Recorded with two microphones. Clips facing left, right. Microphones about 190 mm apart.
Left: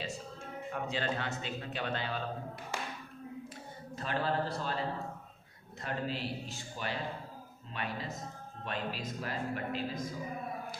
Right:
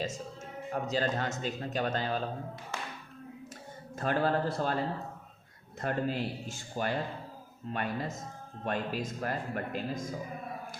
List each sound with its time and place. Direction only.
0.7 s speech: 40° right (ahead or behind)
3.9 s speech: 50° right (ahead or behind)
5.8 s speech: 50° right (ahead or behind)